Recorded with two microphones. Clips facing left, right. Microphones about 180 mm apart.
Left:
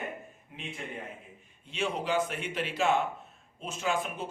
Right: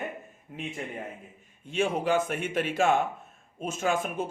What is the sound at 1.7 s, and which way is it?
Speech, 50° right (ahead or behind).